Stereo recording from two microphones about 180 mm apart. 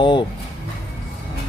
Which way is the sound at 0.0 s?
25° left (ahead or behind).